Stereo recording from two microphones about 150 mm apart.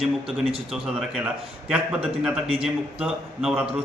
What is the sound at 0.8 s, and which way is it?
A man's voice, 5° right (ahead or behind).